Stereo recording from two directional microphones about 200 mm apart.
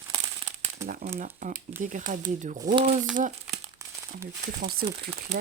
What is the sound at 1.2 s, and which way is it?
Speech, 40° right (ahead or behind).